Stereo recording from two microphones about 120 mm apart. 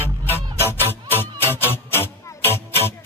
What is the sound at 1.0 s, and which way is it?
Music, 20° left (ahead or behind).